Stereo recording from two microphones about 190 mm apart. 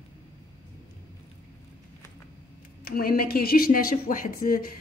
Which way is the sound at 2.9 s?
50° left (ahead or behind).